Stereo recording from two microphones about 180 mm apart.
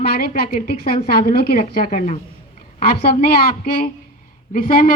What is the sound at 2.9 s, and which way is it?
A woman's voice, 55° left (ahead or behind).